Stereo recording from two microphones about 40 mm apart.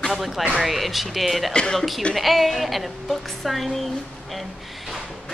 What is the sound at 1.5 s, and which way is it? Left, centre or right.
Speech, left.